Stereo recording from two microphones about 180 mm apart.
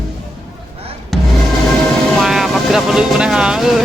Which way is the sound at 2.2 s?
Centre (ahead or behind).